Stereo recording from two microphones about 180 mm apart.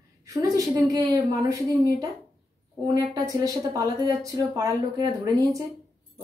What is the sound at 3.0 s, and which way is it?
Speech, 20° right (ahead or behind).